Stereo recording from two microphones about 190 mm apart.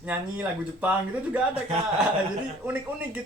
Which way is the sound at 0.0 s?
10° right (ahead or behind).